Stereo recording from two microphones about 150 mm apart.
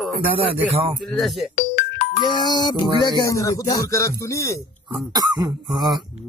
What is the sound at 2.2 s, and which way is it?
Speech, 30° left (ahead or behind).